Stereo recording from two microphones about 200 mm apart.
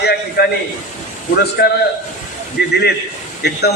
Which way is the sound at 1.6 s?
55° left (ahead or behind).